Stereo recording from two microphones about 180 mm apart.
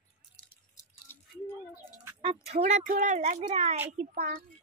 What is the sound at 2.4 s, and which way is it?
Speech, 35° right (ahead or behind).